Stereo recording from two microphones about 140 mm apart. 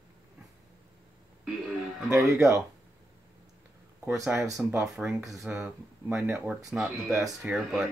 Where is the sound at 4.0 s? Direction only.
20° right (ahead or behind).